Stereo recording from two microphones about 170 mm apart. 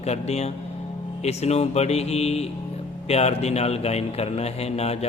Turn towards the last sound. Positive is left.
turn(degrees=40)  # may be behind; listen again after turning